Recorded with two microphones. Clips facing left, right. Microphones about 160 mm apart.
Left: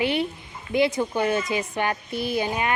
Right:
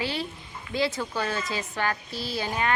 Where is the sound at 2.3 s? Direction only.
15° left (ahead or behind).